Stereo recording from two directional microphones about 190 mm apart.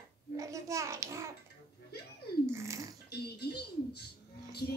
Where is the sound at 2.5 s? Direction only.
15° right (ahead or behind).